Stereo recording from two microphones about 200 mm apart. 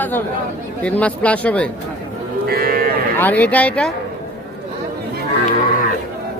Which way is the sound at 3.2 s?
10° left (ahead or behind).